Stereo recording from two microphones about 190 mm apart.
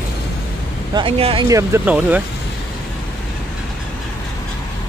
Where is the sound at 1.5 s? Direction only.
10° right (ahead or behind).